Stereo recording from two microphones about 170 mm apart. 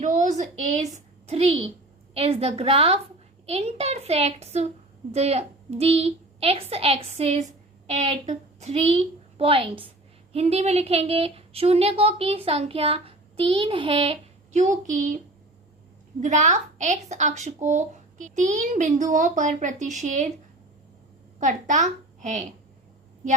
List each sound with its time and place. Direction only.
0.0 s a woman's voice: 45° right (ahead or behind)
16.2 s a woman's voice: 45° right (ahead or behind)
21.3 s a child's voice: 45° right (ahead or behind)